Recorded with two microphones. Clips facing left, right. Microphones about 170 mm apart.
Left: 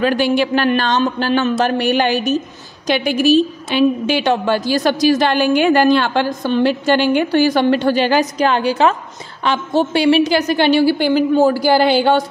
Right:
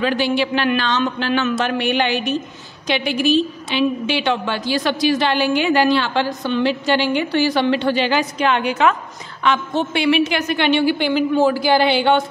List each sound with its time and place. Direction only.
0.0 s a woman's voice: 50° left (ahead or behind)